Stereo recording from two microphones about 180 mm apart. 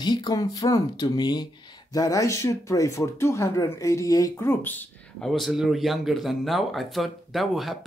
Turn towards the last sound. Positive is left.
turn(degrees=0)  # may be behind; listen again after turning